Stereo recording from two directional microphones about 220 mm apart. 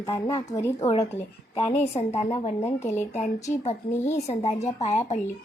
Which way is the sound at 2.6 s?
10° left (ahead or behind).